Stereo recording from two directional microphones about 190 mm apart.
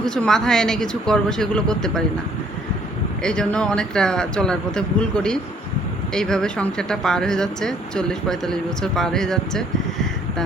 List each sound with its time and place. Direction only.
0.0 s speech: 5° left (ahead or behind)
3.2 s speech: 5° left (ahead or behind)